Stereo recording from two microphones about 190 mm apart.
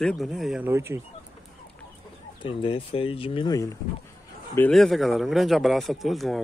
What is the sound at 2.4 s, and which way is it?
Speech, 25° left (ahead or behind).